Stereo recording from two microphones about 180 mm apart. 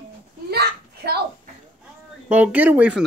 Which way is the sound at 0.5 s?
65° right (ahead or behind).